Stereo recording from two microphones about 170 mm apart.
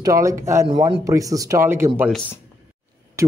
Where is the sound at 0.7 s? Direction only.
30° right (ahead or behind).